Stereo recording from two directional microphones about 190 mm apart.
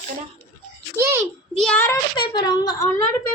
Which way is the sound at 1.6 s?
5° left (ahead or behind).